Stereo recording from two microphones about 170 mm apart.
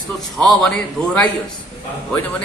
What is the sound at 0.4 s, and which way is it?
Speech, centre (ahead or behind).